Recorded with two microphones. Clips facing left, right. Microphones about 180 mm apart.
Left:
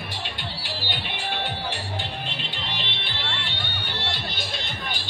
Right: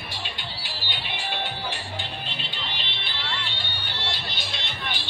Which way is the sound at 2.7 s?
70° left (ahead or behind).